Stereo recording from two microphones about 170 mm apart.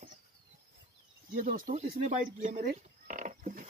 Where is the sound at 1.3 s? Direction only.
55° right (ahead or behind).